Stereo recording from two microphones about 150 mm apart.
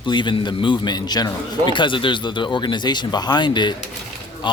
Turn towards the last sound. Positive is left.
turn(degrees=30)  # may be behind; listen again after turning